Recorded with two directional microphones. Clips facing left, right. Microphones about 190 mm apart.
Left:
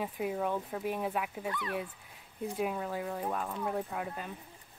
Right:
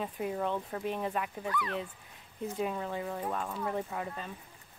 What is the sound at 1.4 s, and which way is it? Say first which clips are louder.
Speech: right 2 dB; 25° left (ahead or behind).